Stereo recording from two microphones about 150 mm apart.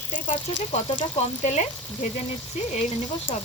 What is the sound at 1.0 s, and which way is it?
Frying, 50° left (ahead or behind).